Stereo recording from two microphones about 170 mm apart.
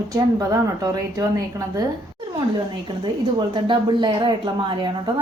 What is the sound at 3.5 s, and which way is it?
A woman's voice, 25° right (ahead or behind).